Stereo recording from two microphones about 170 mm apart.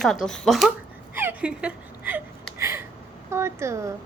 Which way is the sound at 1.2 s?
10° right (ahead or behind).